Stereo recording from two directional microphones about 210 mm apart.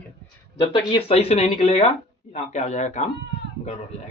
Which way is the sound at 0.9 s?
30° left (ahead or behind).